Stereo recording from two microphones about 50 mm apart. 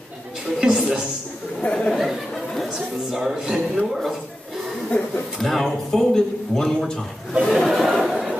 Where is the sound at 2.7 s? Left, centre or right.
Centre.